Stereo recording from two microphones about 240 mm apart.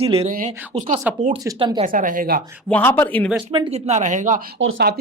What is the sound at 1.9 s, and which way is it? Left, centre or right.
Speech, right.